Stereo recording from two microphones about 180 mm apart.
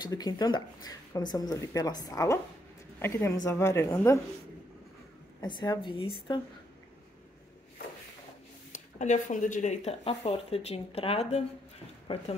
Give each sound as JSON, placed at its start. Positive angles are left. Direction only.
{"t": 0.0, "sound": "a woman's voice", "side_deg": 20}
{"t": 5.4, "sound": "speech", "side_deg": 25}
{"t": 8.7, "sound": "speech", "side_deg": 40}